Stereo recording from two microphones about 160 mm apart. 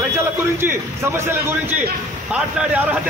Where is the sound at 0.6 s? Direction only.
15° right (ahead or behind).